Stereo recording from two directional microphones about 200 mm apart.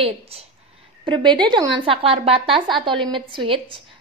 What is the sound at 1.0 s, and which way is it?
A woman's voice, 25° right (ahead or behind).